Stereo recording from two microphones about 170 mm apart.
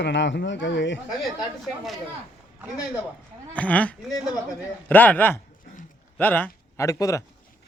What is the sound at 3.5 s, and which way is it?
Speech, 10° left (ahead or behind).